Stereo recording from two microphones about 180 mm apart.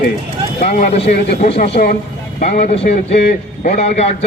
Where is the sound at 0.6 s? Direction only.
45° left (ahead or behind).